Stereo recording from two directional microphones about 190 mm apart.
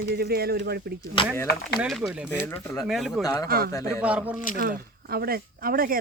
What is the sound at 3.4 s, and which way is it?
Speech, 50° right (ahead or behind).